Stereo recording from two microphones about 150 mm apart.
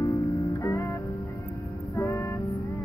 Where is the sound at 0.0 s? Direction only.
25° left (ahead or behind).